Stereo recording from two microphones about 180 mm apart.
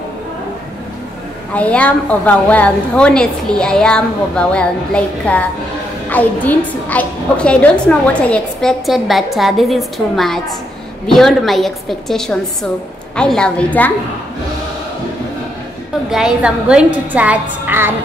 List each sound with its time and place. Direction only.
1.5 s a woman's voice: 5° left (ahead or behind)
16.1 s a woman's voice: 5° right (ahead or behind)